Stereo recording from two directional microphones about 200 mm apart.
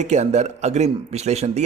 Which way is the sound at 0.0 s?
35° right (ahead or behind).